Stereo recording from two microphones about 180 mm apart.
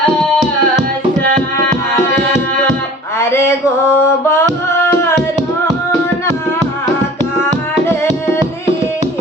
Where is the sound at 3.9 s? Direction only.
15° left (ahead or behind).